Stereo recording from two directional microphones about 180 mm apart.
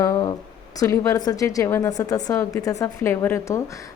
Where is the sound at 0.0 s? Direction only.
20° left (ahead or behind).